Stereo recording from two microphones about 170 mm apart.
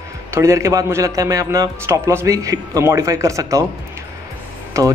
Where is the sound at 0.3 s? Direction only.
20° right (ahead or behind).